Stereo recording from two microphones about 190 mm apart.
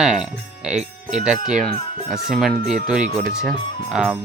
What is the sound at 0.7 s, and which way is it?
Speech, 35° right (ahead or behind).